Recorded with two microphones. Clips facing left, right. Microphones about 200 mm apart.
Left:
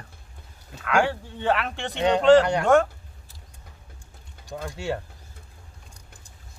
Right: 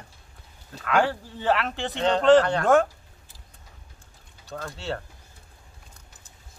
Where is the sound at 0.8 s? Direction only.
Centre (ahead or behind).